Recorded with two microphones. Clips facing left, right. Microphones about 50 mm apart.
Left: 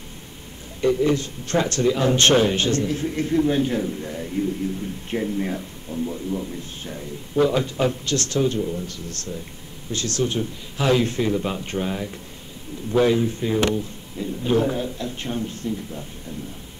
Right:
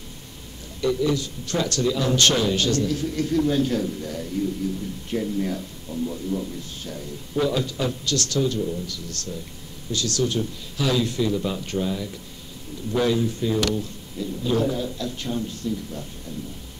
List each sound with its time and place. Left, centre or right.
0.7 s a man's voice: left
5.9 s speech: centre
6.8 s a man's voice: left